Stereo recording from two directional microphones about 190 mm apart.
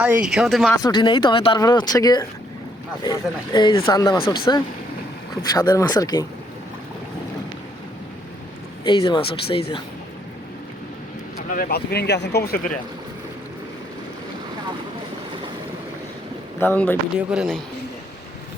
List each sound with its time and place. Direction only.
0.0 s speech: 5° right (ahead or behind)
0.8 s speech: 20° left (ahead or behind)
8.8 s speech: 25° left (ahead or behind)
11.5 s speech: 50° left (ahead or behind)
16.6 s speech: 10° left (ahead or behind)
17.2 s speech: 5° right (ahead or behind)